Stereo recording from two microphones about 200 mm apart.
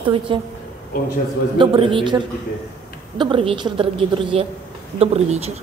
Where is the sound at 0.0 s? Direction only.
25° right (ahead or behind).